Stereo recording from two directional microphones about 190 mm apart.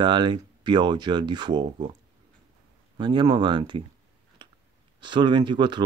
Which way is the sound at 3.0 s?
25° right (ahead or behind).